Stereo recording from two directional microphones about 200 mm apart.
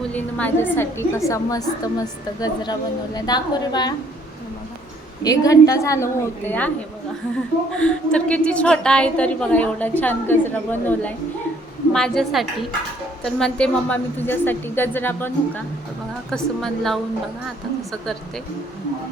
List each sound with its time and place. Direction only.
0.1 s a woman's voice: 10° left (ahead or behind)
5.2 s a woman's voice: 15° left (ahead or behind)
7.8 s a woman's voice: 5° left (ahead or behind)